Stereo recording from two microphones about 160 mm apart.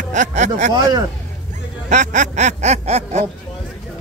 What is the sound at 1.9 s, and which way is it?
Speech, 50° right (ahead or behind).